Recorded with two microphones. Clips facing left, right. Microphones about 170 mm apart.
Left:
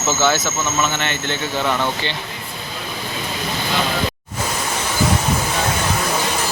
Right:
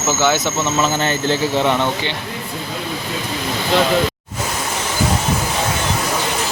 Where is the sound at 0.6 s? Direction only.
35° right (ahead or behind).